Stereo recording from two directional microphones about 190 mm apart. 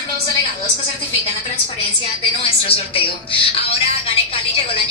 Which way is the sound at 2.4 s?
30° left (ahead or behind).